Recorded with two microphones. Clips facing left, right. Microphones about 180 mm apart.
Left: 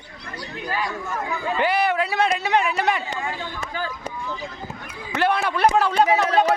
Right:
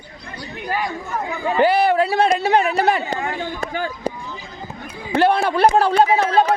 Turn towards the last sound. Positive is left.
turn(degrees=-35)  # may be behind; listen again after turning